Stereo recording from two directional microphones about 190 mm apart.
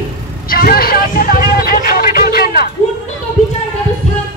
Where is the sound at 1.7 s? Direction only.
50° left (ahead or behind).